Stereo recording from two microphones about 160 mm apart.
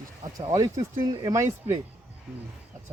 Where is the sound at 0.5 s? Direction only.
20° right (ahead or behind).